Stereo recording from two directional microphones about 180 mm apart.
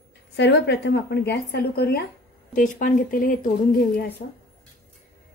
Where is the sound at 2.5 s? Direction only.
45° left (ahead or behind).